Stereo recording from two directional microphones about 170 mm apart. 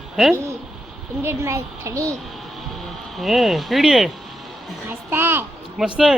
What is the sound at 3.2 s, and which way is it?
Speech, centre (ahead or behind).